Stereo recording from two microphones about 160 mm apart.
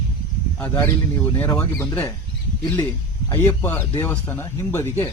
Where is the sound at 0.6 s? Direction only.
10° left (ahead or behind).